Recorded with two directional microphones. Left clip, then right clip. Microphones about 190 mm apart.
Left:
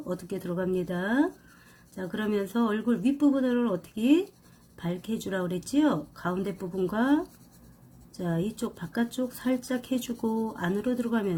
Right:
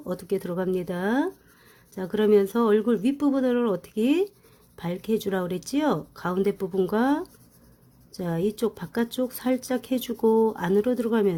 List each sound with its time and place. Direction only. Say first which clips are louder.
0.1 s speech: right 6 dB; 40° right (ahead or behind)